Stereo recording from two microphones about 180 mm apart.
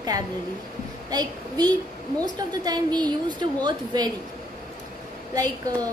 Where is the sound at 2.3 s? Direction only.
20° right (ahead or behind).